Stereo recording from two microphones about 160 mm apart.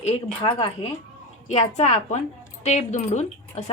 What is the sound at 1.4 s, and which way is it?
A woman's voice, 45° left (ahead or behind).